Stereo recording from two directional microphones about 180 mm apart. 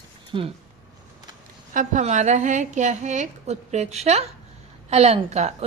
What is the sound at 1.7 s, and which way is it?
A woman's voice, 45° right (ahead or behind).